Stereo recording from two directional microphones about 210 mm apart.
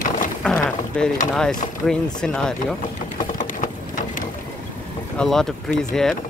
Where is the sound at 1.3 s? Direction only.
5° left (ahead or behind).